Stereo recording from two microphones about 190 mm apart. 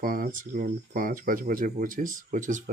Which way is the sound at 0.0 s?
50° right (ahead or behind).